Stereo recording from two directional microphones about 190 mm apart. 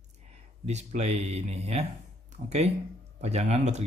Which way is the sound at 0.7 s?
35° right (ahead or behind).